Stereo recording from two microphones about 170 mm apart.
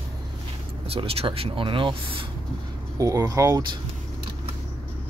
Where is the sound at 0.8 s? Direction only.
35° right (ahead or behind).